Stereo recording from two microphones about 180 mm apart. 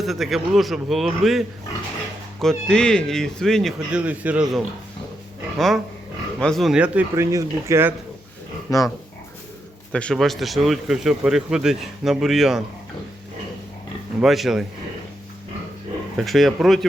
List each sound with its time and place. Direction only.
0.0 s speech: centre (ahead or behind)
8.7 s speech: 20° left (ahead or behind)
9.9 s speech: 5° left (ahead or behind)
14.2 s speech: centre (ahead or behind)
16.1 s speech: centre (ahead or behind)